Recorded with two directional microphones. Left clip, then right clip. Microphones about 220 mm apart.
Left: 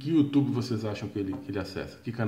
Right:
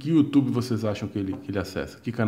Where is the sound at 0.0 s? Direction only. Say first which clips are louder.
Right 3 dB; 35° right (ahead or behind).